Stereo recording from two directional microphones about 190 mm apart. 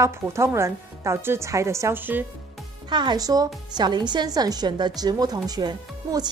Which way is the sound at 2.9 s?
25° right (ahead or behind).